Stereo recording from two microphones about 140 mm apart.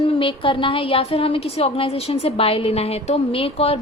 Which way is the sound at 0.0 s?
40° left (ahead or behind).